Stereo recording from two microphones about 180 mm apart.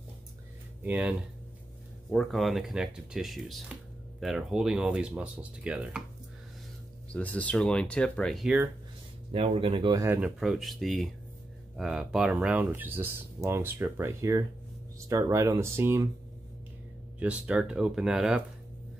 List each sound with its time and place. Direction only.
0.8 s speech: 10° right (ahead or behind)
7.1 s speech: 5° left (ahead or behind)
9.3 s speech: 35° right (ahead or behind)
10.0 s speech: 10° right (ahead or behind)
10.4 s speech: centre (ahead or behind)
17.2 s speech: 5° right (ahead or behind)